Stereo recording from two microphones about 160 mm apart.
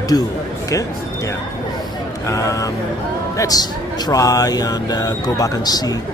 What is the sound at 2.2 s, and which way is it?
Speech, 20° left (ahead or behind).